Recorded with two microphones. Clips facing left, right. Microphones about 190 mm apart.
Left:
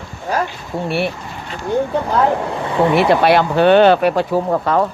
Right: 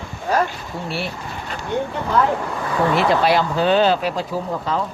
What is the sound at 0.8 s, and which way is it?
Speech, 60° left (ahead or behind).